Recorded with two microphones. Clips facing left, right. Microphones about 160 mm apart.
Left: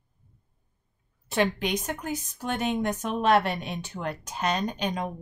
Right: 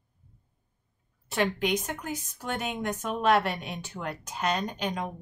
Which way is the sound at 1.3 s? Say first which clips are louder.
Left 1 dB; 20° left (ahead or behind).